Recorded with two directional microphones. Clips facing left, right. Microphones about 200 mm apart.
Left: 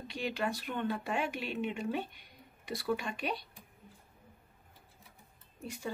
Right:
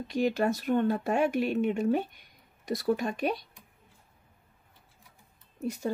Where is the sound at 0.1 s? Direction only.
45° right (ahead or behind).